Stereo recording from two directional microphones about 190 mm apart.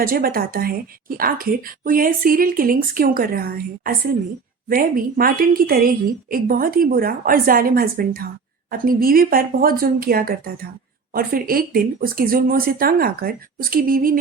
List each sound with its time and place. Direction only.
0.0 s a woman's voice: 50° right (ahead or behind)